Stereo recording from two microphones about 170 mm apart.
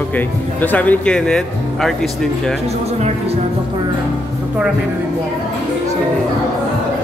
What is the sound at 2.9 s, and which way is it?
Speech, 40° right (ahead or behind).